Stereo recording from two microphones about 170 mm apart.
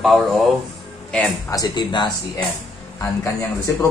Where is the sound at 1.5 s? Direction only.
25° left (ahead or behind).